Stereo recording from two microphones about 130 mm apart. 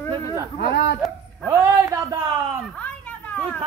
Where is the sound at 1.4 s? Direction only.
20° right (ahead or behind).